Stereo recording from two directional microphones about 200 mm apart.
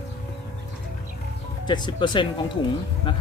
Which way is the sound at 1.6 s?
20° left (ahead or behind).